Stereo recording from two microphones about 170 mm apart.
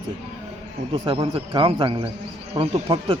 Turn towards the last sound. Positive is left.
turn(degrees=-30)  # may be behind; listen again after turning